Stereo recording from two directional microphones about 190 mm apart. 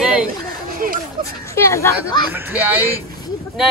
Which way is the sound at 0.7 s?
50° right (ahead or behind).